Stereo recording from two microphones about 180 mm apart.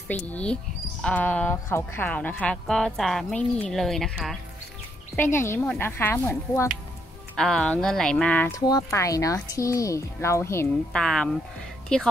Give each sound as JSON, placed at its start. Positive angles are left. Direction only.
{"t": 0.1, "sound": "a woman's voice", "side_deg": 5}
{"t": 5.1, "sound": "speech", "side_deg": 10}
{"t": 7.3, "sound": "a woman's voice", "side_deg": 0}
{"t": 8.5, "sound": "speech", "side_deg": 20}
{"t": 11.0, "sound": "a woman's voice", "side_deg": 5}